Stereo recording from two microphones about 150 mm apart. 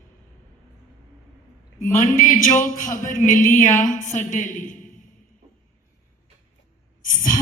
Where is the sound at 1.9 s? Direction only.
60° left (ahead or behind).